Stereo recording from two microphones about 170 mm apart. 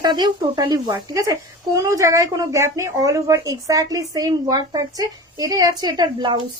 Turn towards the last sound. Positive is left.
turn(degrees=-25)  # may be behind; listen again after turning